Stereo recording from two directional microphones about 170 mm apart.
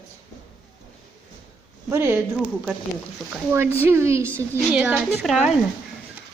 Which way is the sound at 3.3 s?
15° right (ahead or behind).